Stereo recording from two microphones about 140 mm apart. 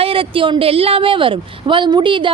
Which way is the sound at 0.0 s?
40° right (ahead or behind).